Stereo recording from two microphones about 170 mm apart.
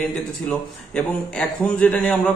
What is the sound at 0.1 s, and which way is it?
Speech, 5° left (ahead or behind).